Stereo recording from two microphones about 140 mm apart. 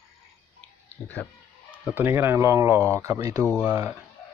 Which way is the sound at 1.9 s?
15° right (ahead or behind).